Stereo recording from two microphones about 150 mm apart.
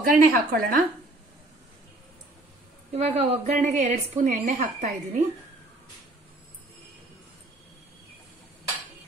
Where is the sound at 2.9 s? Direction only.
45° right (ahead or behind).